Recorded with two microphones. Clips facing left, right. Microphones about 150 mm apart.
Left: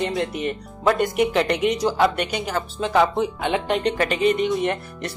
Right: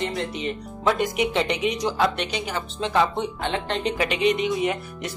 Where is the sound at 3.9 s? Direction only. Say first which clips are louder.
Left 2 dB; 45° left (ahead or behind).